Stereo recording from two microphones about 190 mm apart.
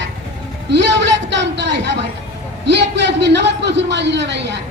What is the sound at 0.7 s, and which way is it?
A man's voice, 70° right (ahead or behind).